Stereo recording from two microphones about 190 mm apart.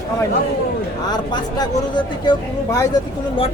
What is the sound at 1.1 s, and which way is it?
Speech, 25° left (ahead or behind).